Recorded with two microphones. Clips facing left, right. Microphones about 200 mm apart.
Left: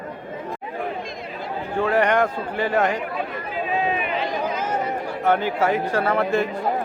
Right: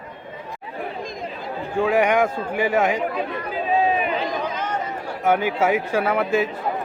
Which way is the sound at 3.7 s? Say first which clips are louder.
Right 5 dB; 35° right (ahead or behind).